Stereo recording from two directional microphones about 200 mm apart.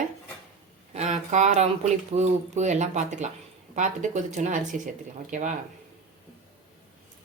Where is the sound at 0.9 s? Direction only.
35° right (ahead or behind).